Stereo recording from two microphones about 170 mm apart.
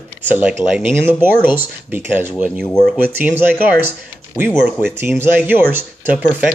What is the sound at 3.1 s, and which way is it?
Speech, 10° right (ahead or behind).